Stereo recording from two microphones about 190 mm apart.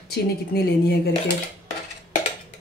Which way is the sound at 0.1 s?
55° left (ahead or behind).